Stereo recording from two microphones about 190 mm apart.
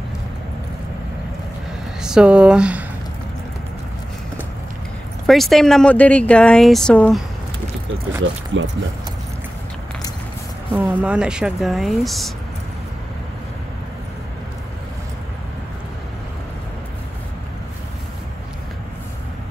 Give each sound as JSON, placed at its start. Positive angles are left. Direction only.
{"t": 2.0, "sound": "speech", "side_deg": -5}
{"t": 5.2, "sound": "speech", "side_deg": 0}
{"t": 8.5, "sound": "speech", "side_deg": -80}
{"t": 10.9, "sound": "speech", "side_deg": -5}